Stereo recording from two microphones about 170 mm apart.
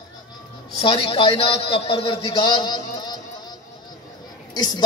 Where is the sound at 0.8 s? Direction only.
30° left (ahead or behind).